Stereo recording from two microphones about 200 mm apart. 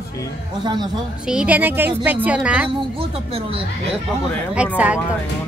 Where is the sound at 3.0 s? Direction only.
30° right (ahead or behind).